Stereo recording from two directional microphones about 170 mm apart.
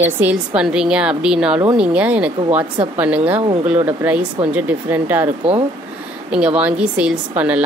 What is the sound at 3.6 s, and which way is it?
A woman's voice, 10° right (ahead or behind).